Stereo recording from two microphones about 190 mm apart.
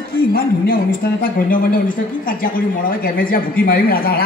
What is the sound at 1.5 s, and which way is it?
A woman's voice, 45° left (ahead or behind).